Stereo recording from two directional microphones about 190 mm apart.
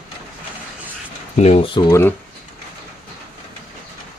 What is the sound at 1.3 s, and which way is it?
Speech, 35° left (ahead or behind).